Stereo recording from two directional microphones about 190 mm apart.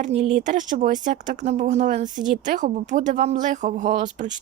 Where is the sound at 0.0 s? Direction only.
35° right (ahead or behind).